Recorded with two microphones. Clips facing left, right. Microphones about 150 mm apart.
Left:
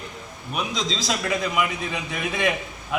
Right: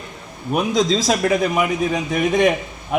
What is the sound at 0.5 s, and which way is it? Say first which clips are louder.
A man's voice: right 10 dB; 50° right (ahead or behind).